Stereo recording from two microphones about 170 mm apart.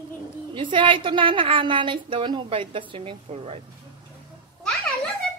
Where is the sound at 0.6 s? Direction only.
30° right (ahead or behind).